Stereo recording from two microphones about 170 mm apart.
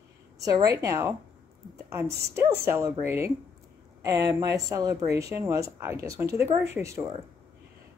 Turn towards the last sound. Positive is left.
turn(degrees=-15)  # may be behind; listen again after turning